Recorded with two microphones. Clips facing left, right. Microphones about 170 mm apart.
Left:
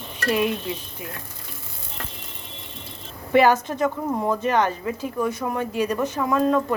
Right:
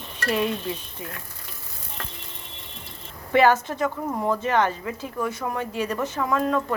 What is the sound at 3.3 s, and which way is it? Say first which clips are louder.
Stir: left 1 dB; 15° left (ahead or behind).